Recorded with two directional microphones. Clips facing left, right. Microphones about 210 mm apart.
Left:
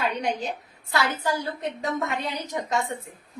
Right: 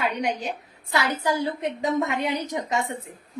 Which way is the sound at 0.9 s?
15° right (ahead or behind).